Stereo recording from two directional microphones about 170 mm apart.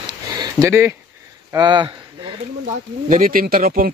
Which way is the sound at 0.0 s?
25° right (ahead or behind).